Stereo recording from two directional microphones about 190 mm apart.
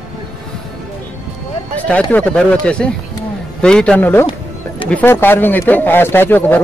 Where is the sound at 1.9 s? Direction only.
5° left (ahead or behind).